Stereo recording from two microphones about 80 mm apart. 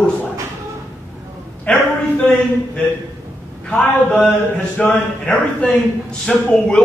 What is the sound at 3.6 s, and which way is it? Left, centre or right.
A man's voice, centre.